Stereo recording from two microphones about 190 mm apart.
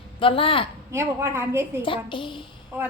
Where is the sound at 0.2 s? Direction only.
30° left (ahead or behind).